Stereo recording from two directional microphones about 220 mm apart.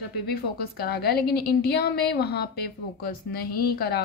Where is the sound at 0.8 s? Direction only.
45° left (ahead or behind).